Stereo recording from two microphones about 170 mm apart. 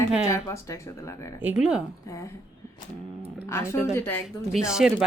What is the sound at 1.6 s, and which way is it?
Speech, 5° right (ahead or behind).